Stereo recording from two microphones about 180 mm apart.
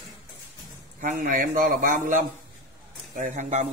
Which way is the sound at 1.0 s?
45° right (ahead or behind).